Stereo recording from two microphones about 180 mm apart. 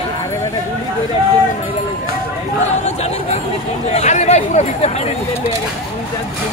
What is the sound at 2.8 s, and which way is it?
Chatter, 35° left (ahead or behind).